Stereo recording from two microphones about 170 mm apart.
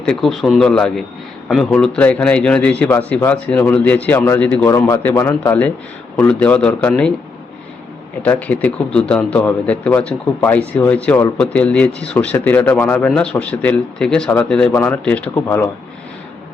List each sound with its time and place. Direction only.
0.0 s a man's voice: 5° left (ahead or behind)
8.2 s speech: 10° left (ahead or behind)